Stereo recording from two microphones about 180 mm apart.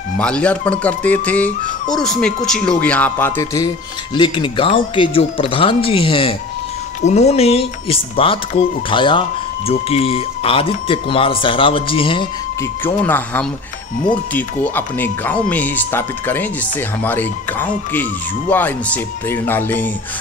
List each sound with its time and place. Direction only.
0.2 s speech: 5° left (ahead or behind); by 12.3 s 30° left (ahead or behind)
12.8 s speech: 10° left (ahead or behind)